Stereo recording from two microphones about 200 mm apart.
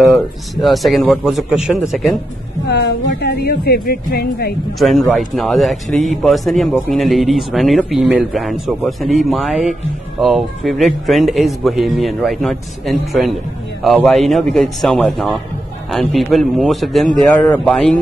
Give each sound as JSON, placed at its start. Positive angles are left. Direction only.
{"t": 0.1, "sound": "speech", "side_deg": 0}
{"t": 2.7, "sound": "speech", "side_deg": 55}
{"t": 4.7, "sound": "speech", "side_deg": 0}